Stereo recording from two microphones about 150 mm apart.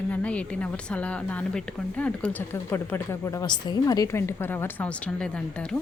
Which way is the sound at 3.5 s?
30° left (ahead or behind).